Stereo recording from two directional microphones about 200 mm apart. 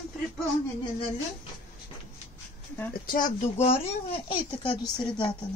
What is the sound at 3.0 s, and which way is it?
Speech, 40° left (ahead or behind).